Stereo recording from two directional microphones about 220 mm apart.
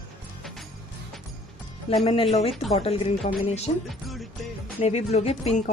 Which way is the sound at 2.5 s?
Centre (ahead or behind).